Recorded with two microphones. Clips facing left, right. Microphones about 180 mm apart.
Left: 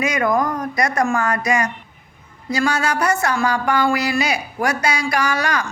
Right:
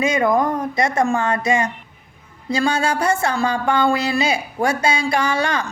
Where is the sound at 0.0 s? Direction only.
25° right (ahead or behind).